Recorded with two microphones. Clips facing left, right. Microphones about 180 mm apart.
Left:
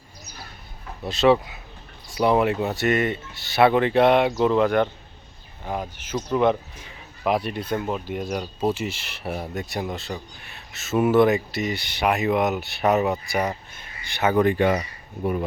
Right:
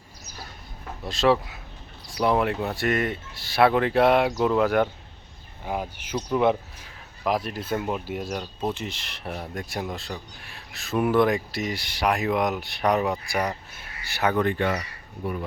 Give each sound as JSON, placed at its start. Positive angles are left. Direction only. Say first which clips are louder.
{"t": 1.0, "sound": "speech", "louder": "left 3 dB", "side_deg": 0}
{"t": 14.3, "sound": "speech", "louder": "left 8 dB", "side_deg": 10}